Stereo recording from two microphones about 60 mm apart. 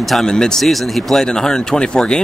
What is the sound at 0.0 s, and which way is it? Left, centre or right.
Speech, centre.